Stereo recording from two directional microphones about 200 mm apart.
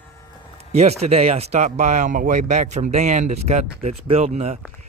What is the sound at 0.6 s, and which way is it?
Speech, 35° right (ahead or behind).